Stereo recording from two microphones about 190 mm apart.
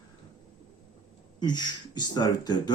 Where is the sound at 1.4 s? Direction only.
20° left (ahead or behind).